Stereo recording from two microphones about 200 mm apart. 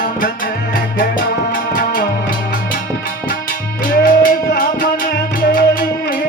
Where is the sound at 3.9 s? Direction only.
45° left (ahead or behind).